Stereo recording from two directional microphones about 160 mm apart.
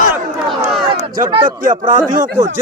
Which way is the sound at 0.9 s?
35° right (ahead or behind).